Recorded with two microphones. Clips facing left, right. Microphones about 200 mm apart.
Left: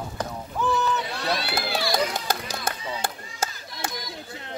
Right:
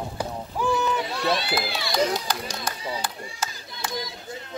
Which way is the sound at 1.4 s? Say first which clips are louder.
Even; 60° left (ahead or behind).